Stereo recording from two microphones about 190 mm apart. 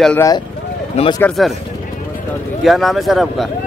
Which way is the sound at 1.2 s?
Centre (ahead or behind).